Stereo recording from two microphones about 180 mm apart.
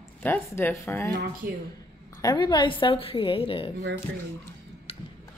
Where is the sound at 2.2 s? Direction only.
20° left (ahead or behind).